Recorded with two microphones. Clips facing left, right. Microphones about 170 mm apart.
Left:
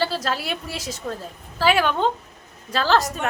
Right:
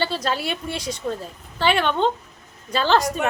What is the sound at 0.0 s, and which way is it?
A woman's voice, centre (ahead or behind).